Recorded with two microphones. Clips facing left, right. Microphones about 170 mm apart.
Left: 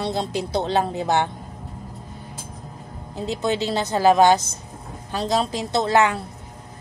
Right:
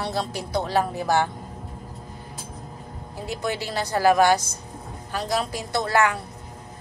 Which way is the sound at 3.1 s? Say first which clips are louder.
Left 5 dB; 20° left (ahead or behind).